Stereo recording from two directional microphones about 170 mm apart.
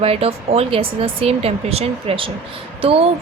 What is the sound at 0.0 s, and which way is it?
A woman's voice, 35° right (ahead or behind).